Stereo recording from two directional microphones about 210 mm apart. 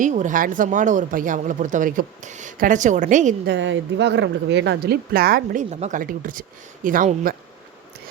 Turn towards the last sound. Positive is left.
turn(degrees=-40)  # may be behind; listen again after turning